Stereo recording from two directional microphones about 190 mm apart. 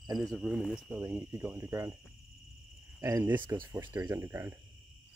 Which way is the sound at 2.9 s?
15° right (ahead or behind).